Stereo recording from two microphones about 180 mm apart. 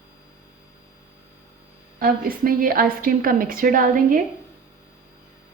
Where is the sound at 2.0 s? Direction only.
55° right (ahead or behind).